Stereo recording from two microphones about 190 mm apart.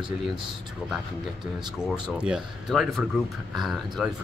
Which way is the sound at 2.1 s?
5° right (ahead or behind).